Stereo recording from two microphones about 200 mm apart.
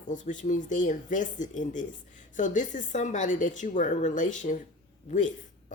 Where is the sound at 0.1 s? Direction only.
40° left (ahead or behind).